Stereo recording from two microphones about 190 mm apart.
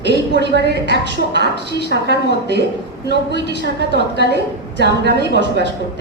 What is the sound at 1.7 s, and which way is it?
Speech, 60° left (ahead or behind).